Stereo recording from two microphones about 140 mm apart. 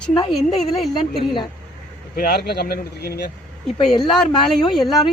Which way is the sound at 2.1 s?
90° left.